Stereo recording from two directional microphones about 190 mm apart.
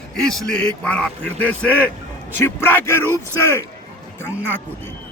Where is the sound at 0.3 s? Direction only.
5° left (ahead or behind).